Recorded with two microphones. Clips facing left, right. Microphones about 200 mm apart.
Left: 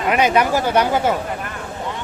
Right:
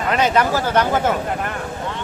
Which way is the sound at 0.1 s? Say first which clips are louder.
Left 1 dB; 10° left (ahead or behind).